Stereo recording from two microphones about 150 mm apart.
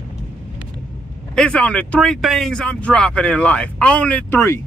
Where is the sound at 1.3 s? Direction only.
5° left (ahead or behind).